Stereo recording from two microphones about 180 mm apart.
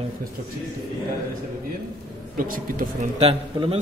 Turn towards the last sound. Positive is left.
turn(degrees=-35)  # may be behind; listen again after turning